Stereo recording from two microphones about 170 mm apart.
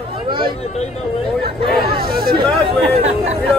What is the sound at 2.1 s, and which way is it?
Hubbub, 60° right (ahead or behind).